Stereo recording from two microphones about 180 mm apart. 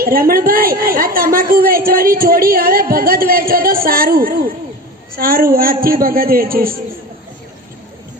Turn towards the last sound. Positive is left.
turn(degrees=-55)  # may be behind; listen again after turning